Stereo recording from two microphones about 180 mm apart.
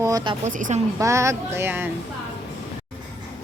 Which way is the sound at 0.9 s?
15° right (ahead or behind).